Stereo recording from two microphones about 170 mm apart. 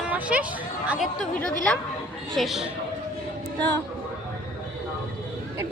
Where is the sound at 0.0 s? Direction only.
5° right (ahead or behind).